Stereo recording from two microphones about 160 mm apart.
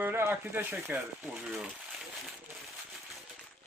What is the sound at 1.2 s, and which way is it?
Speech, 5° right (ahead or behind).